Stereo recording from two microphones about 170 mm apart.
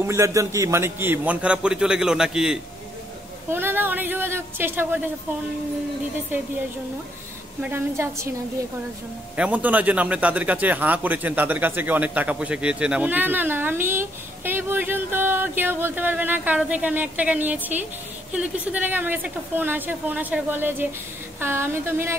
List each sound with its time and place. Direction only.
0.0 s speech: 15° right (ahead or behind)
7.7 s speech: 15° right (ahead or behind)
9.4 s speech: 10° right (ahead or behind)